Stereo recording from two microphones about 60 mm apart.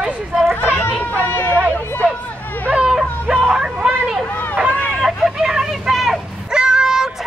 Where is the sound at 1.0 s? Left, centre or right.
Left.